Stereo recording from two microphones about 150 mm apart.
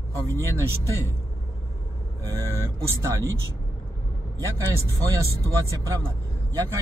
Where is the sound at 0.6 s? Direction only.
15° right (ahead or behind).